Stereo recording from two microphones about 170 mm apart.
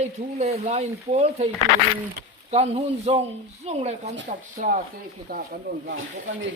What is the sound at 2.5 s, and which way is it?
Speech, 40° right (ahead or behind).